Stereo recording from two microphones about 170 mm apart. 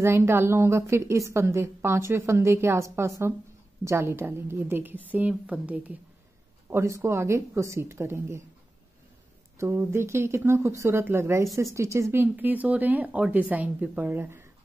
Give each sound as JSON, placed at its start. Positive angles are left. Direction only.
{"t": 0.0, "sound": "a woman's voice", "side_deg": -15}
{"t": 9.6, "sound": "a woman's voice", "side_deg": -15}